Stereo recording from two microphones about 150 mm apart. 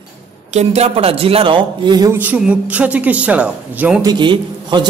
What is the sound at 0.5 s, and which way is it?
A man's voice, 45° right (ahead or behind).